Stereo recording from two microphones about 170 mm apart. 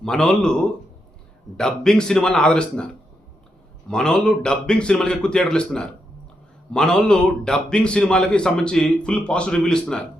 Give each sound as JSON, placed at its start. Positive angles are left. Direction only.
{"t": 0.0, "sound": "a man's voice", "side_deg": 5}